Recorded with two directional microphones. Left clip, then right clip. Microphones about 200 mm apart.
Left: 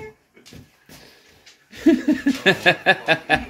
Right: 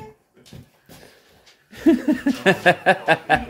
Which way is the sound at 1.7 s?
5° right (ahead or behind).